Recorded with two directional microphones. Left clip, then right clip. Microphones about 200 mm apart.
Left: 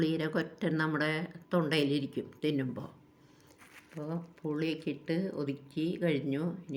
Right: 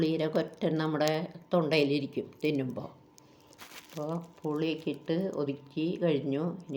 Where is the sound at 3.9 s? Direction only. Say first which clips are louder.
Right 4 dB; 25° left (ahead or behind).